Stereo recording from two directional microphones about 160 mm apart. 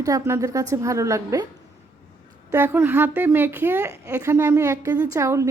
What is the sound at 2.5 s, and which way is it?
A woman's voice, 15° right (ahead or behind).